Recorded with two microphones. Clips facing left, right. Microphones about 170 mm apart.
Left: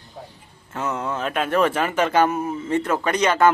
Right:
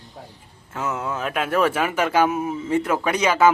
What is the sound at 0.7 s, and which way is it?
Speech, 5° right (ahead or behind).